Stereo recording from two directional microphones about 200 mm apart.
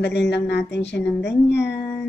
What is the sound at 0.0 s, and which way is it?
Speech, 60° left (ahead or behind).